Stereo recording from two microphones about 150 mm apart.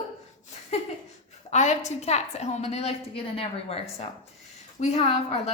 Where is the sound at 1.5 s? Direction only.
50° left (ahead or behind).